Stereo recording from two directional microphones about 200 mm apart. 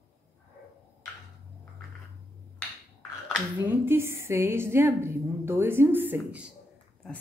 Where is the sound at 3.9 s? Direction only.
10° right (ahead or behind).